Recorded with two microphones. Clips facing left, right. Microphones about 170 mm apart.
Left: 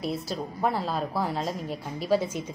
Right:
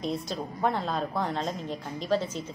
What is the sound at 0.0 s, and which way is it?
A woman's voice, 5° left (ahead or behind).